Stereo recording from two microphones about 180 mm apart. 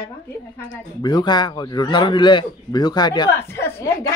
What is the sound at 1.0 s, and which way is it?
A man's voice, 25° left (ahead or behind).